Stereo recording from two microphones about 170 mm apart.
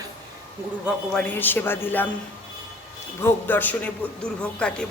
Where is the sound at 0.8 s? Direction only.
5° left (ahead or behind).